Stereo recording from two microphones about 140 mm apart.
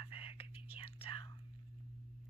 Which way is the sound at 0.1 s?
40° left (ahead or behind).